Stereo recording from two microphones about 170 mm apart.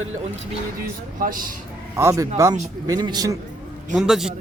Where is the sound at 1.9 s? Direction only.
15° right (ahead or behind).